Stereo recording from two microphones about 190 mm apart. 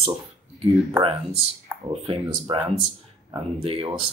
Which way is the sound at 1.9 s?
25° right (ahead or behind).